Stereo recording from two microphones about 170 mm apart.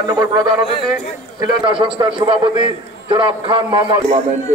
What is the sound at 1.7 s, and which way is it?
A man's voice, 30° right (ahead or behind).